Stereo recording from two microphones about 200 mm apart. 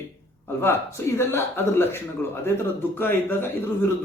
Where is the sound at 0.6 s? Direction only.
10° left (ahead or behind).